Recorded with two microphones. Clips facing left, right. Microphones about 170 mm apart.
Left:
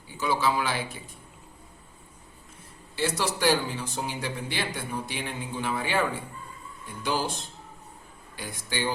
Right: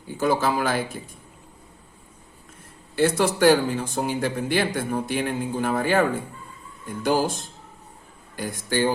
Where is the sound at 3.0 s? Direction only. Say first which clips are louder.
Right 8 dB; 55° right (ahead or behind).